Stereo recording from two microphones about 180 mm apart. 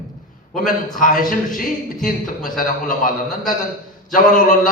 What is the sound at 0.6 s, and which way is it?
A man's voice, 50° left (ahead or behind).